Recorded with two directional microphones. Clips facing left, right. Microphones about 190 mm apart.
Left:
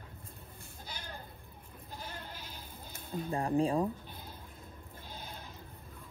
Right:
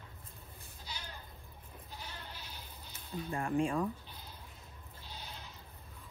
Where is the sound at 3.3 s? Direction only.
35° left (ahead or behind).